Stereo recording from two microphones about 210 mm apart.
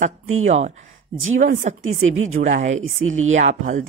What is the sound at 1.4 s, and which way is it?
Speech, 35° right (ahead or behind).